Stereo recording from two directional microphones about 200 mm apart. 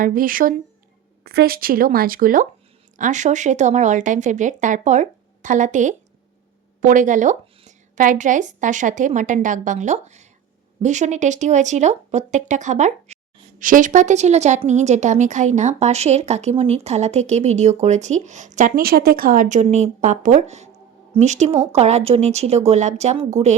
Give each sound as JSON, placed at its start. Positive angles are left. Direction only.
{"t": 0.0, "sound": "a woman's voice", "side_deg": -45}